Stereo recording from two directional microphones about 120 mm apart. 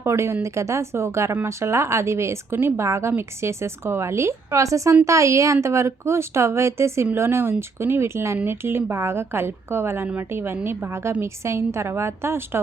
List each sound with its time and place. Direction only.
0.0 s a woman's voice: 20° right (ahead or behind)